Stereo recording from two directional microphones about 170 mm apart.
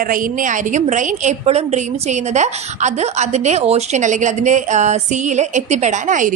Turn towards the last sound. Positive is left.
turn(degrees=-45)  # may be behind; listen again after turning